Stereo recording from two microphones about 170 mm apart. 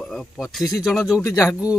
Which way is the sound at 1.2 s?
15° left (ahead or behind).